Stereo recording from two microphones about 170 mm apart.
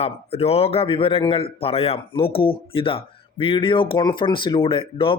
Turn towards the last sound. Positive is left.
turn(degrees=30)  # may be behind; listen again after turning